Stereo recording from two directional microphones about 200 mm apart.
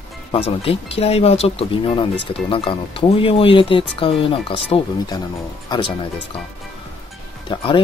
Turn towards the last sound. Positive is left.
turn(degrees=25)  # may be behind; listen again after turning